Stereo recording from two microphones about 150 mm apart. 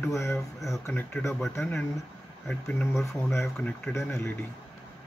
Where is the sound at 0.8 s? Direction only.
5° left (ahead or behind).